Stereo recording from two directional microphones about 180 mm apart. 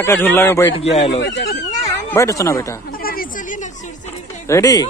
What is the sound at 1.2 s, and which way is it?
Speech, 75° left (ahead or behind).